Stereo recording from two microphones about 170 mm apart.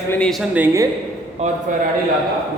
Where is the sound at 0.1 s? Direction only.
5° left (ahead or behind).